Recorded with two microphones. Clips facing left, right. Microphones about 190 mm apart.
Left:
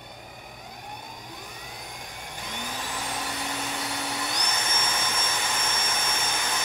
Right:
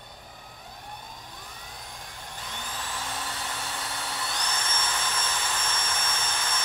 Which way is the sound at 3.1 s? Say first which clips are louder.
Left 3 dB; 15° left (ahead or behind).